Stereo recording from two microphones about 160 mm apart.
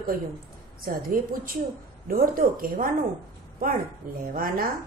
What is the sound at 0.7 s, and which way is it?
A woman's voice, 65° right (ahead or behind).